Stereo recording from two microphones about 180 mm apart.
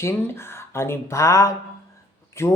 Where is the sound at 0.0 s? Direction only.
15° left (ahead or behind).